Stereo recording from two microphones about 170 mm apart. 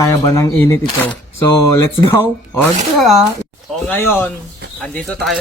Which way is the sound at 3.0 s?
Centre (ahead or behind).